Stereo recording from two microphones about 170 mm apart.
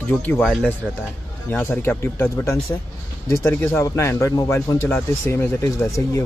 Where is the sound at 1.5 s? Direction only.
10° left (ahead or behind).